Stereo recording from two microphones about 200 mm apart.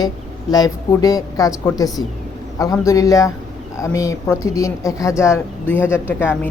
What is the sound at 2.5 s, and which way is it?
Speech, 15° left (ahead or behind).